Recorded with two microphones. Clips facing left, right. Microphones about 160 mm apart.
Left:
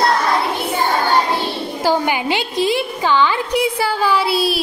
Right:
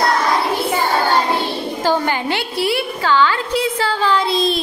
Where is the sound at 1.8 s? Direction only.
15° left (ahead or behind).